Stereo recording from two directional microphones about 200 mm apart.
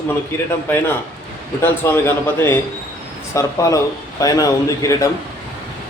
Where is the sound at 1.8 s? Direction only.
15° left (ahead or behind).